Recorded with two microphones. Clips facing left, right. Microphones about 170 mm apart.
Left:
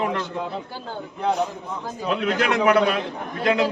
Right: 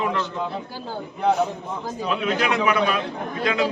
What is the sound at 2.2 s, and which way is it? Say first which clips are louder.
Speech: left 3 dB; 70° left (ahead or behind).